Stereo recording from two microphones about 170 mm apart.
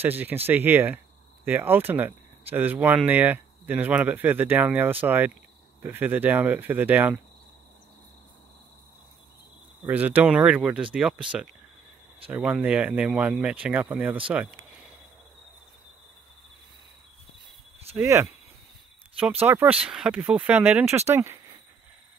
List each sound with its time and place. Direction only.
0.0 s speech: 10° right (ahead or behind)
9.8 s speech: 10° right (ahead or behind)
12.3 s speech: 5° right (ahead or behind)
17.9 s speech: 15° right (ahead or behind)
19.4 s speech: 10° right (ahead or behind)